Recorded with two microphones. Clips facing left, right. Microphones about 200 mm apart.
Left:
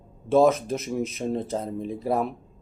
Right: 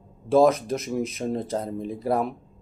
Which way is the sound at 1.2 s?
Centre (ahead or behind).